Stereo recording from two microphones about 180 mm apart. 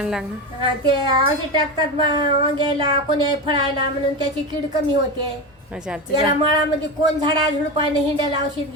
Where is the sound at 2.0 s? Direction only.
25° right (ahead or behind).